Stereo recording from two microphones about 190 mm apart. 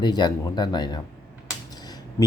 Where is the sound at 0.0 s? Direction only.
20° left (ahead or behind).